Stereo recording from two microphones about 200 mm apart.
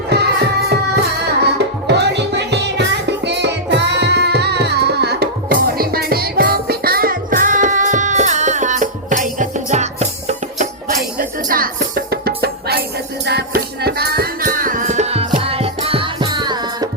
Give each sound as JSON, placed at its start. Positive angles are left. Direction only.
{"t": 0.1, "sound": "music", "side_deg": -55}
{"t": 11.2, "sound": "music", "side_deg": -45}